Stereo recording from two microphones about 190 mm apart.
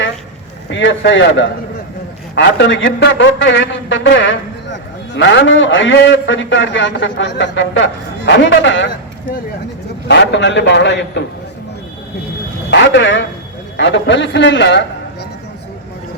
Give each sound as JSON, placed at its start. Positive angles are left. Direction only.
{"t": 0.7, "sound": "a man's voice", "side_deg": 75}
{"t": 10.1, "sound": "a man's voice", "side_deg": 70}
{"t": 12.7, "sound": "a man's voice", "side_deg": 75}